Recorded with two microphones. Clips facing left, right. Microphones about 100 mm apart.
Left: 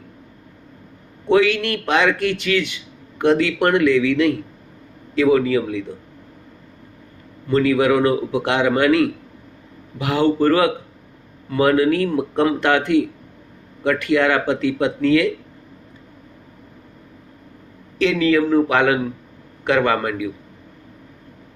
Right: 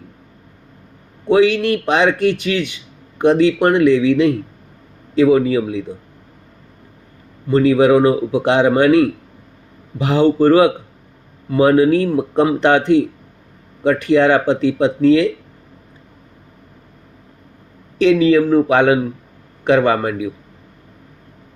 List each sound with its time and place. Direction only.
1.3 s a man's voice: 20° right (ahead or behind)
7.5 s a man's voice: 20° right (ahead or behind)
17.9 s a man's voice: 20° right (ahead or behind)